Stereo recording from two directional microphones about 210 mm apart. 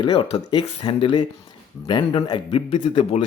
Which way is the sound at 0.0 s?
25° left (ahead or behind).